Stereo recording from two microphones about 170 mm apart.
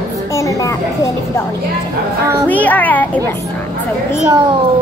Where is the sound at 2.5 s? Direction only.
10° left (ahead or behind).